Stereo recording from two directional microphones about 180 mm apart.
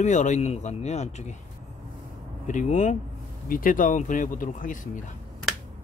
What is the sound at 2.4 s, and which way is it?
Speech, 45° left (ahead or behind).